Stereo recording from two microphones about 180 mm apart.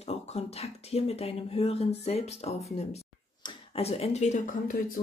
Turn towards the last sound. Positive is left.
turn(degrees=50)  # may be behind; listen again after turning